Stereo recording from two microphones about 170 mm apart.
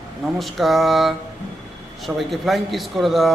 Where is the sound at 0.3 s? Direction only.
Centre (ahead or behind).